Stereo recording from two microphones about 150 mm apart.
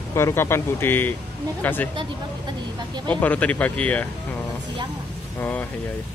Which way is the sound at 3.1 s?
10° left (ahead or behind).